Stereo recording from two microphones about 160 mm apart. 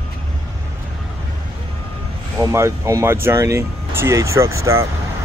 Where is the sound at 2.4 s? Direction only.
20° right (ahead or behind).